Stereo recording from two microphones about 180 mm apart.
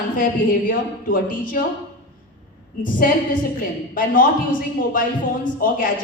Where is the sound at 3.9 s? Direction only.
50° left (ahead or behind).